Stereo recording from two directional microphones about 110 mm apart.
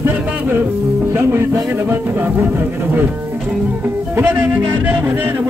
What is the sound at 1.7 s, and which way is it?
Speech, 20° right (ahead or behind).